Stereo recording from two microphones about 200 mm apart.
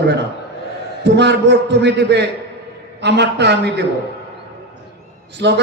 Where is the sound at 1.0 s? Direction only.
60° right (ahead or behind).